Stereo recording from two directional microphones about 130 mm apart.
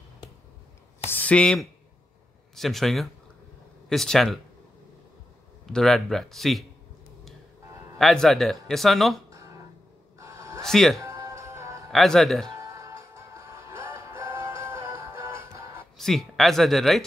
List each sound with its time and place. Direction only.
1.0 s a sound: 15° left (ahead or behind)
2.5 s speech: centre (ahead or behind)
5.7 s speech: 5° left (ahead or behind)
8.0 s speech: centre (ahead or behind)
9.3 s music: 25° right (ahead or behind)
10.1 s a sound: 25° right (ahead or behind)
10.6 s speech: 5° left (ahead or behind)
11.0 s music: 25° right (ahead or behind)
11.9 s speech: centre (ahead or behind)
12.5 s music: 25° right (ahead or behind)
16.0 s speech: centre (ahead or behind)